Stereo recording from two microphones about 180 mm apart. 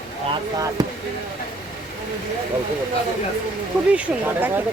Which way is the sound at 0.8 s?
20° right (ahead or behind).